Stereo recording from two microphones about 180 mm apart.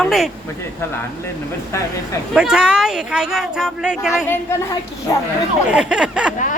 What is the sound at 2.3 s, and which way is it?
Speech, 5° right (ahead or behind).